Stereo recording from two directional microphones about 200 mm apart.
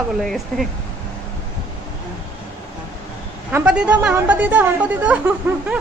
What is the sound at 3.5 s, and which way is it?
A woman's voice, 5° right (ahead or behind).